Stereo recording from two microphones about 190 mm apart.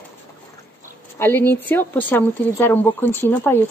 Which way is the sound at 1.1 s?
10° left (ahead or behind).